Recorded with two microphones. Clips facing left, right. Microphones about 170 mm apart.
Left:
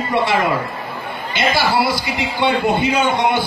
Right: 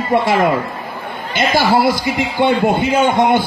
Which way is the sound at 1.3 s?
50° right (ahead or behind).